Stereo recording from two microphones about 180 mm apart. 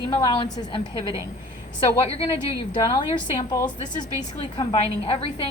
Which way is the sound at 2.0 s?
30° left (ahead or behind).